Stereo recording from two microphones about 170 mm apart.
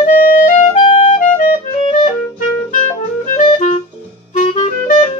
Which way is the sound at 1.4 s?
55° left (ahead or behind).